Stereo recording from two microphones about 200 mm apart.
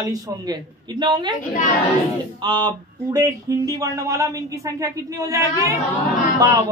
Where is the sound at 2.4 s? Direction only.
20° right (ahead or behind).